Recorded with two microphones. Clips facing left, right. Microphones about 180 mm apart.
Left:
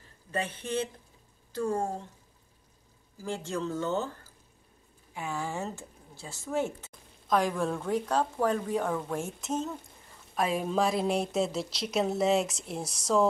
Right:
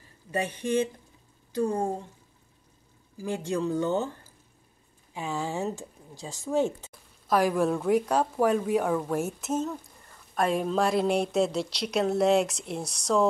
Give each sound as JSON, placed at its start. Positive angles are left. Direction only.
{"t": 0.3, "sound": "speech", "side_deg": -10}
{"t": 3.2, "sound": "speech", "side_deg": -15}